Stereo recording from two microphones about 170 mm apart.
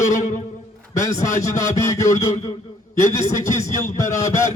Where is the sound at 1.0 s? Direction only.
20° left (ahead or behind).